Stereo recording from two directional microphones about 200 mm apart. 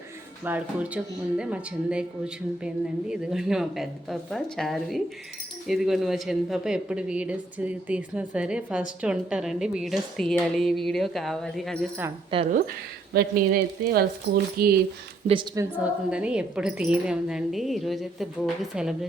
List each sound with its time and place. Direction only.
0.4 s speech: 5° right (ahead or behind)
13.1 s speech: 50° right (ahead or behind)
15.3 s a woman's voice: 25° right (ahead or behind)
15.8 s speech: 5° right (ahead or behind)